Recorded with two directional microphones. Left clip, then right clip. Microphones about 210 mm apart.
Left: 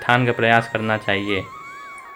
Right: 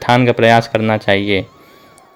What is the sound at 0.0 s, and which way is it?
Speech, 40° right (ahead or behind).